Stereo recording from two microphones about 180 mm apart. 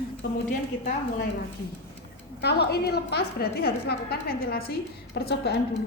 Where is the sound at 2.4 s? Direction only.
65° left (ahead or behind).